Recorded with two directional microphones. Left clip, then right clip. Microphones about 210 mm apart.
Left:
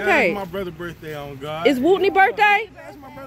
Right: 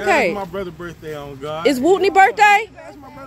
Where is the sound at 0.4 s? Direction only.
15° left (ahead or behind).